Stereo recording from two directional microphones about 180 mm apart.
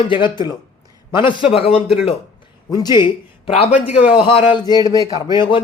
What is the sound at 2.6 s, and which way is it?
Speech, 20° left (ahead or behind).